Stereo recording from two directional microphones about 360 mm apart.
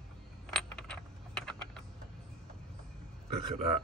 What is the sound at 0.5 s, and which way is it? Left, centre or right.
Coin, centre.